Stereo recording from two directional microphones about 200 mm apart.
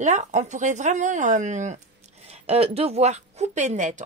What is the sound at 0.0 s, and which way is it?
Speech, 35° right (ahead or behind).